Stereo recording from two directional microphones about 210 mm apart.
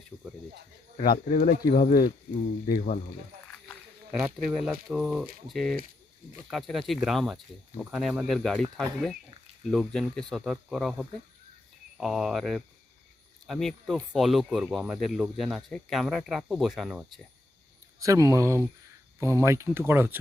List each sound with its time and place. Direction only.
0.1 s snake: 10° right (ahead or behind)
0.9 s speech: 40° left (ahead or behind)
4.6 s speech: 5° right (ahead or behind)
18.0 s speech: 15° right (ahead or behind)